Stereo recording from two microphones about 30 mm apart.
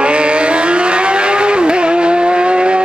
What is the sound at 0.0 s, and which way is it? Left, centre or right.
Vehicle, right.